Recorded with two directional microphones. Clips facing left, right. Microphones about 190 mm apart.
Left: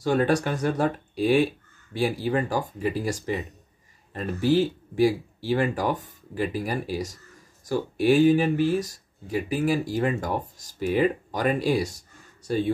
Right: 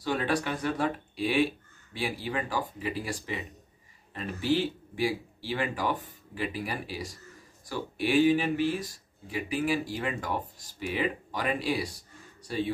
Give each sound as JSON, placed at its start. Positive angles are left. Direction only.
{"t": 0.0, "sound": "speech", "side_deg": 45}